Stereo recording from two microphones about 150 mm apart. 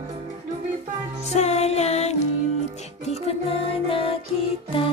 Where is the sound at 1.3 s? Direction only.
50° left (ahead or behind).